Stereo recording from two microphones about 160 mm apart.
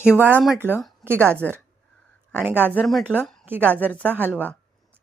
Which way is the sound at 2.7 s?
Centre (ahead or behind).